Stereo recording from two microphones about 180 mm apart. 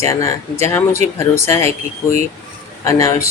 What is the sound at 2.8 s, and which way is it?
Speech, 15° left (ahead or behind).